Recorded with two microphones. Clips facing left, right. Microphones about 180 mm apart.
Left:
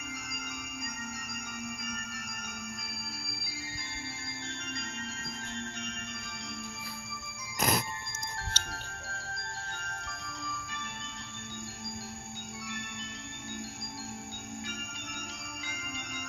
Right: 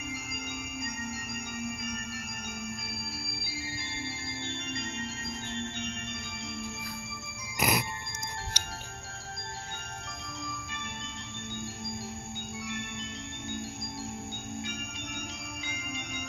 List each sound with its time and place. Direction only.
5.5 s music: 25° right (ahead or behind)
7.5 s music: 10° right (ahead or behind)